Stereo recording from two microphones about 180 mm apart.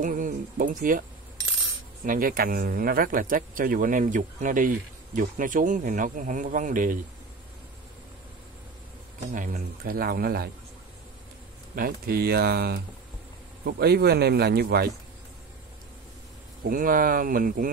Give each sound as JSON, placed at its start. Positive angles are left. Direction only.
{"t": 0.0, "sound": "speech", "side_deg": -45}
{"t": 2.0, "sound": "speech", "side_deg": -50}
{"t": 9.3, "sound": "speech", "side_deg": -50}
{"t": 11.7, "sound": "speech", "side_deg": -55}
{"t": 16.6, "sound": "speech", "side_deg": -50}